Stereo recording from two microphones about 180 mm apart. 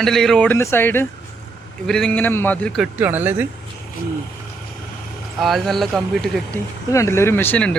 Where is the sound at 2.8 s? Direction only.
10° right (ahead or behind).